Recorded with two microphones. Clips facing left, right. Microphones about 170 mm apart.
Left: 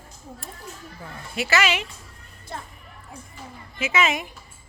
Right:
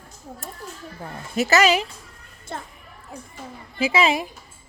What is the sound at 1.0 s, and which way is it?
Speech, 40° right (ahead or behind).